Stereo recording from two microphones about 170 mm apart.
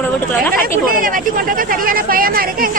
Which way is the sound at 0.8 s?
55° right (ahead or behind).